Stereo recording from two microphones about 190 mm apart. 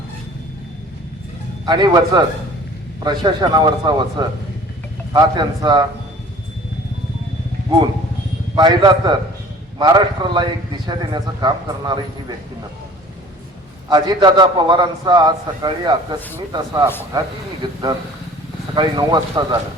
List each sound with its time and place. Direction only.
1.6 s a man's voice: 25° right (ahead or behind)
8.5 s a man's voice: 20° right (ahead or behind)
13.9 s a man's voice: 20° right (ahead or behind)